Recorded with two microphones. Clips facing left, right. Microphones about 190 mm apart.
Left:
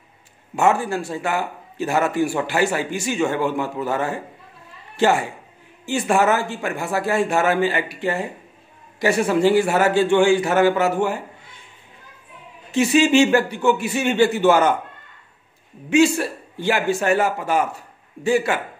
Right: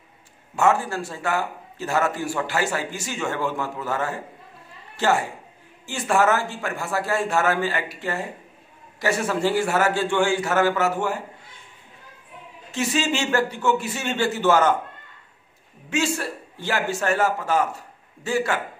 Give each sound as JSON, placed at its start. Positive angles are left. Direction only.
{"t": 0.6, "sound": "a man's voice", "side_deg": 15}
{"t": 12.7, "sound": "a man's voice", "side_deg": 15}
{"t": 15.9, "sound": "a man's voice", "side_deg": 15}